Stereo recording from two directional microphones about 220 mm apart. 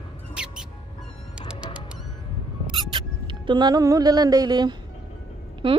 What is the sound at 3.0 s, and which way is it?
Music, 20° right (ahead or behind).